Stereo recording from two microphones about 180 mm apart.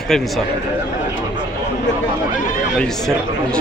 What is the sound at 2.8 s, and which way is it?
Speech, 5° left (ahead or behind).